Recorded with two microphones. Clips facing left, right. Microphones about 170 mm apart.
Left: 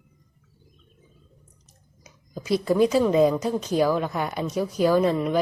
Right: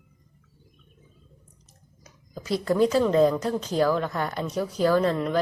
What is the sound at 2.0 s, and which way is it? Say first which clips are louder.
Speech: left 3 dB; 15° left (ahead or behind).